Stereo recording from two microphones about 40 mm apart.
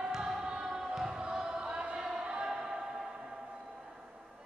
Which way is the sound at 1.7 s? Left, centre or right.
Right.